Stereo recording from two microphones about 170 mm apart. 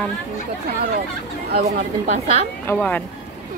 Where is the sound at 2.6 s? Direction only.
10° left (ahead or behind).